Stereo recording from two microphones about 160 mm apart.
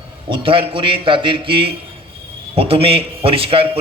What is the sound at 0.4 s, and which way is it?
A man's voice, 35° right (ahead or behind).